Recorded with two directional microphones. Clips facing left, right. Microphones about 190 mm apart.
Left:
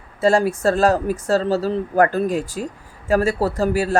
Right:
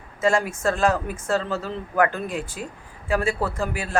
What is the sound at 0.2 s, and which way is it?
Speech, 35° left (ahead or behind).